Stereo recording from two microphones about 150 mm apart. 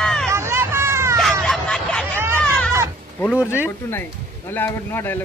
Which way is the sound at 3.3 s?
10° right (ahead or behind).